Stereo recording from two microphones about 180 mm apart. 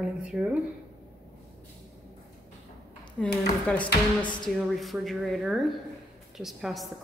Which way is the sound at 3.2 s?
5° left (ahead or behind).